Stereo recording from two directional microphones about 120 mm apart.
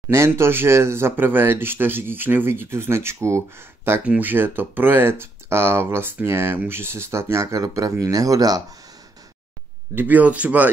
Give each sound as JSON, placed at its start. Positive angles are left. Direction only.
{"t": 0.1, "sound": "speech", "side_deg": -20}
{"t": 9.9, "sound": "speech", "side_deg": -15}